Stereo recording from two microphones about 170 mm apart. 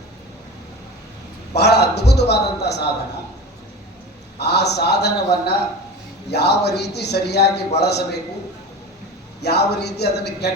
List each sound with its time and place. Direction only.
1.5 s a sound: 75° left (ahead or behind)
2.3 s a man's voice: 75° left (ahead or behind)
4.4 s a man's voice: 75° left (ahead or behind)
9.4 s a man's voice: 75° left (ahead or behind)